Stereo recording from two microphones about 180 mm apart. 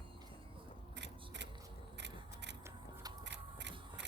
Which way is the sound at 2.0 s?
75° right (ahead or behind).